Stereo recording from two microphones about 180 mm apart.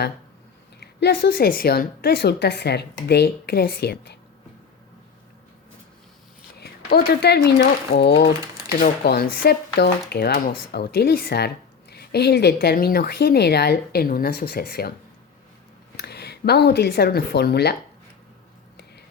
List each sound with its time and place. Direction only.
0.8 s speech: 65° left (ahead or behind)
6.6 s speech: 60° left (ahead or behind)
16.0 s speech: 65° left (ahead or behind)